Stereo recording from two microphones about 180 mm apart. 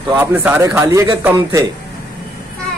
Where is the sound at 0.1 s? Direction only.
10° right (ahead or behind).